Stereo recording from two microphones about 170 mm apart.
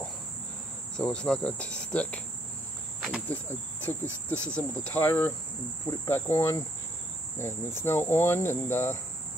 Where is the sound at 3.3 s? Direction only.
10° left (ahead or behind).